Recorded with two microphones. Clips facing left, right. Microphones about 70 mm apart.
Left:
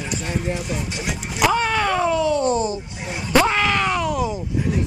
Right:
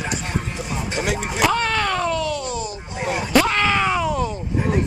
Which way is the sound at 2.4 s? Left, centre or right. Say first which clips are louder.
Left 7 dB; left.